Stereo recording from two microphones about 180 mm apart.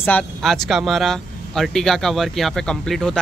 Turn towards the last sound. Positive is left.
turn(degrees=5)  # may be behind; listen again after turning